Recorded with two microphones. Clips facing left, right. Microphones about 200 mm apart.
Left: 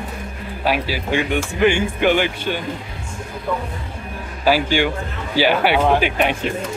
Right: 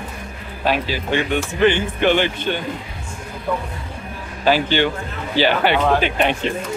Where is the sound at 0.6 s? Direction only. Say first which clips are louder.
Even; 10° left (ahead or behind).